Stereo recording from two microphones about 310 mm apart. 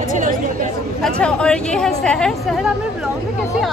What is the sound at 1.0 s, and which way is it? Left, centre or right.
A woman's voice, centre.